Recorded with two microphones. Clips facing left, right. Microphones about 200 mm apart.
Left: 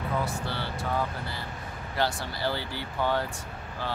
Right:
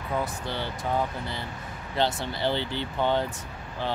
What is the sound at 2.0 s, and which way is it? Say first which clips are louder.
Speech: right 3 dB; 20° right (ahead or behind).